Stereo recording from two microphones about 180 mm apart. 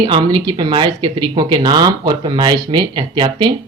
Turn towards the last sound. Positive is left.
turn(degrees=-25)  # may be behind; listen again after turning